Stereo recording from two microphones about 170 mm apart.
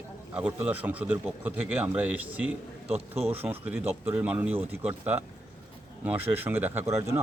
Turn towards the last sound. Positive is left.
turn(degrees=-15)  # may be behind; listen again after turning